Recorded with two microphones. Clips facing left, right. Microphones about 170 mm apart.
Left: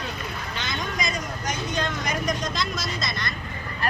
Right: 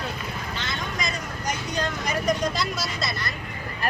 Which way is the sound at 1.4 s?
35° right (ahead or behind).